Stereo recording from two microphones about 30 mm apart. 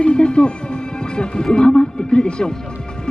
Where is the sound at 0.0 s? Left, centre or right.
Left.